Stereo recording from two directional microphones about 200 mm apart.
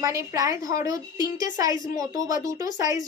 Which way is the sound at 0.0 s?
15° right (ahead or behind).